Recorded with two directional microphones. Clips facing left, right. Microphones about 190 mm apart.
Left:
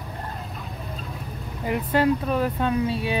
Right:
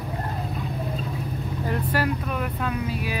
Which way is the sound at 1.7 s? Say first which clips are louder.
Left 5 dB; 25° left (ahead or behind).